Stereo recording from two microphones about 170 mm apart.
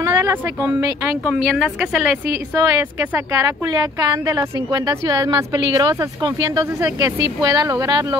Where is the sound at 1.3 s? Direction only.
Centre (ahead or behind).